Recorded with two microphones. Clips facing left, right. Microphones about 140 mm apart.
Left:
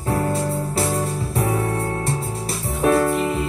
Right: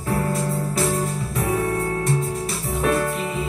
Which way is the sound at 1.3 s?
30° left (ahead or behind).